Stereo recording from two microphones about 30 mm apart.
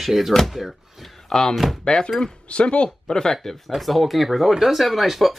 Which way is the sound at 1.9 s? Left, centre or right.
Left.